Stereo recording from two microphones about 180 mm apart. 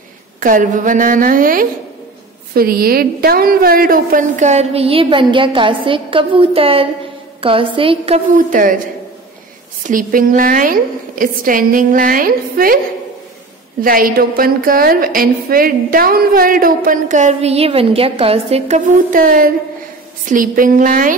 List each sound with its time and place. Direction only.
0.4 s a woman's voice: 45° right (ahead or behind)
8.4 s a woman's voice: 50° right (ahead or behind)
9.8 s a woman's voice: 50° right (ahead or behind)
13.7 s a woman's voice: 50° right (ahead or behind)